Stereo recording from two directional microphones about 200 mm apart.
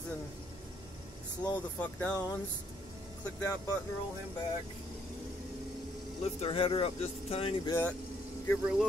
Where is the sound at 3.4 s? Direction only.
15° left (ahead or behind).